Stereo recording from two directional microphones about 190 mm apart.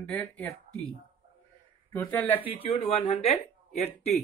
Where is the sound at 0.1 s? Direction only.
5° left (ahead or behind).